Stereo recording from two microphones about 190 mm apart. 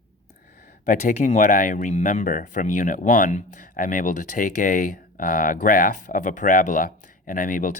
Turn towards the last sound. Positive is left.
turn(degrees=45)  # may be behind; listen again after turning